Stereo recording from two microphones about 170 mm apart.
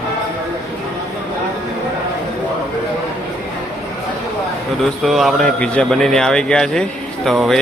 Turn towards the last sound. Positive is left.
turn(degrees=0)  # may be behind; listen again after turning